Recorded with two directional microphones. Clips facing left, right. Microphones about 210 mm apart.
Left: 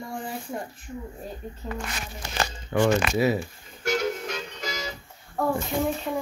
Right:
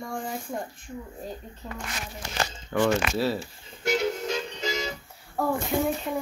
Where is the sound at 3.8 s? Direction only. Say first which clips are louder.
Right 1 dB; 25° right (ahead or behind).